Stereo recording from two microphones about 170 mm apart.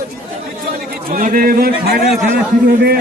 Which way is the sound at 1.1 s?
55° right (ahead or behind).